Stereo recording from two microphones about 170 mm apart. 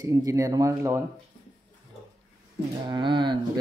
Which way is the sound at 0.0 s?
20° right (ahead or behind).